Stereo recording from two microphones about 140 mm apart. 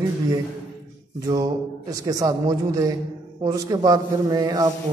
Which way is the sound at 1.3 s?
25° right (ahead or behind).